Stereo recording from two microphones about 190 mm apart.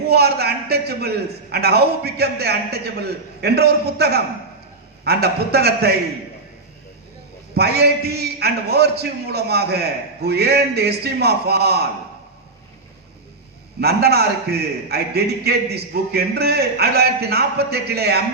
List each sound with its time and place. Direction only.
0.1 s a man's voice: 60° right (ahead or behind)
7.5 s a man's voice: 60° right (ahead or behind)
13.8 s a man's voice: 60° right (ahead or behind)